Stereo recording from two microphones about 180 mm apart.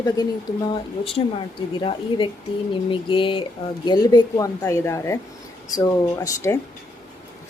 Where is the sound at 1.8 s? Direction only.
30° left (ahead or behind).